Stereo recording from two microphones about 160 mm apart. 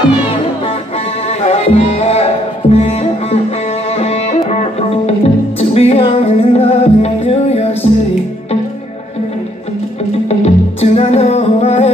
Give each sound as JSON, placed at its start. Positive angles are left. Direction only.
{"t": 1.4, "sound": "music", "side_deg": 45}
{"t": 10.4, "sound": "music", "side_deg": 40}